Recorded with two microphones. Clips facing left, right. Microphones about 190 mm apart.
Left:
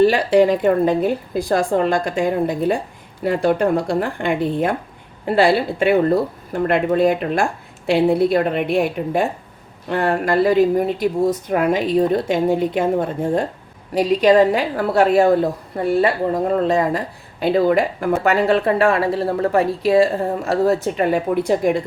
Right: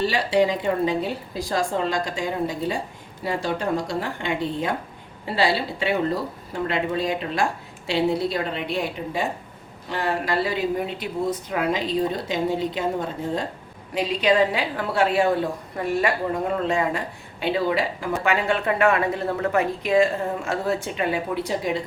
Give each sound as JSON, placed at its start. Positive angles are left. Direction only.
{"t": 0.0, "sound": "a woman's voice", "side_deg": 55}
{"t": 13.9, "sound": "speech", "side_deg": 40}